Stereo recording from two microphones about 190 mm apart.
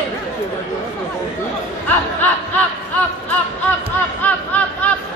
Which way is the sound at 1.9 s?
10° left (ahead or behind).